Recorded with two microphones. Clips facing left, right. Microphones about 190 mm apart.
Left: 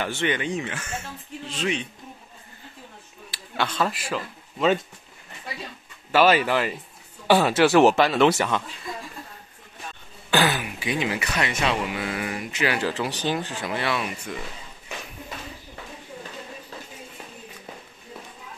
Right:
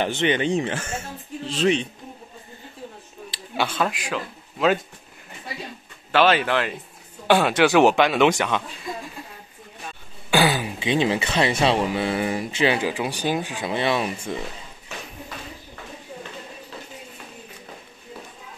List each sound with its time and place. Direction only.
0.0 s speech: 20° right (ahead or behind)
3.3 s speech: 10° right (ahead or behind)
6.1 s speech: 5° left (ahead or behind)
10.3 s throat clearing: 10° right (ahead or behind)
10.6 s speech: 25° right (ahead or behind)
12.8 s speech: 15° right (ahead or behind)